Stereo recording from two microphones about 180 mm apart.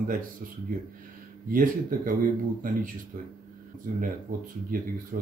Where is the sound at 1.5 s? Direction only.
50° right (ahead or behind).